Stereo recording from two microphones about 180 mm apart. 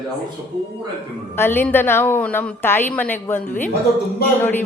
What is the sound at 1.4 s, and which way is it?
A woman's voice, 10° left (ahead or behind).